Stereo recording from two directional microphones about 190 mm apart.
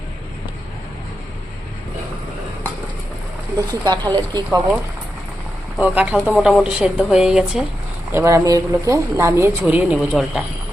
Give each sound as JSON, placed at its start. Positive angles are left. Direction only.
{"t": 3.8, "sound": "speech", "side_deg": -20}
{"t": 5.7, "sound": "speech", "side_deg": -5}
{"t": 8.1, "sound": "speech", "side_deg": -15}